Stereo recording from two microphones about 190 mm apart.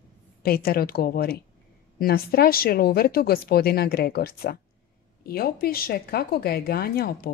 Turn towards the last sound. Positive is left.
turn(degrees=55)  # may be behind; listen again after turning